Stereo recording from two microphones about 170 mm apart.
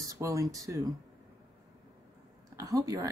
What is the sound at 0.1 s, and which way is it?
Speech, 20° right (ahead or behind).